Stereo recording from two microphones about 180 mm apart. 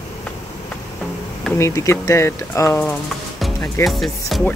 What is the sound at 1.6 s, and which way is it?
Speech, 15° left (ahead or behind).